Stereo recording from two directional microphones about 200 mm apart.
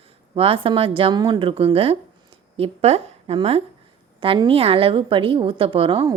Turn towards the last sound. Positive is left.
turn(degrees=-25)  # may be behind; listen again after turning